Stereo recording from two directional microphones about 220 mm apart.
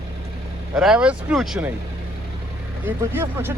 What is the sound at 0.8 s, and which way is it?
Speech, 5° right (ahead or behind).